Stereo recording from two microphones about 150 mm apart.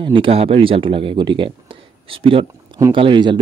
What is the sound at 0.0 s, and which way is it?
Speech, 35° right (ahead or behind).